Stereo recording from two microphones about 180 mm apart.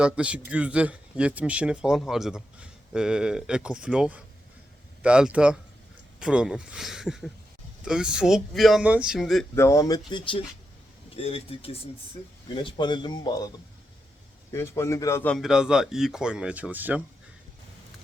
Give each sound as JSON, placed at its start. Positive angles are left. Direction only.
{"t": 0.0, "sound": "speech", "side_deg": -5}
{"t": 9.6, "sound": "speech", "side_deg": 15}
{"t": 14.5, "sound": "speech", "side_deg": 15}
{"t": 15.4, "sound": "speech", "side_deg": -5}